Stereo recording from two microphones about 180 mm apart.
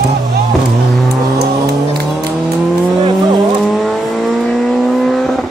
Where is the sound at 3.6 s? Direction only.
Centre (ahead or behind).